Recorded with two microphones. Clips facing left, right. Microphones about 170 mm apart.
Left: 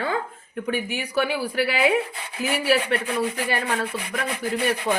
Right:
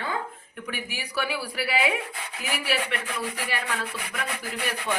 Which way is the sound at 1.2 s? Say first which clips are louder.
Left 7 dB; 25° left (ahead or behind).